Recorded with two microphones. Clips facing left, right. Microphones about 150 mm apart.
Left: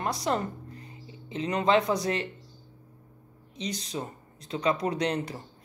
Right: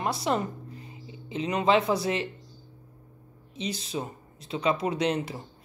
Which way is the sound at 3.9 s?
15° right (ahead or behind).